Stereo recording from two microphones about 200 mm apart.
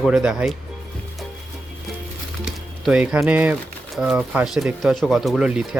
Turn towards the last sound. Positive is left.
turn(degrees=-5)  # may be behind; listen again after turning